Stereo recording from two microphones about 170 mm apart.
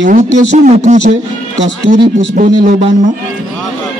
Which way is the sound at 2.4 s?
55° right (ahead or behind).